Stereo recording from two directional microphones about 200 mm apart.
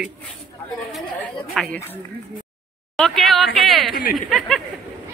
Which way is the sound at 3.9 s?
50° left (ahead or behind).